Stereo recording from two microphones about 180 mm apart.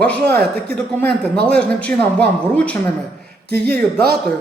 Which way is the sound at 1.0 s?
5° left (ahead or behind).